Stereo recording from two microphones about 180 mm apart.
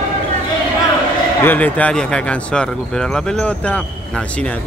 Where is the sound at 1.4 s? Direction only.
10° left (ahead or behind).